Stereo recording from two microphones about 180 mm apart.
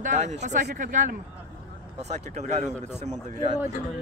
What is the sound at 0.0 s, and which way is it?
A woman's voice, 40° right (ahead or behind).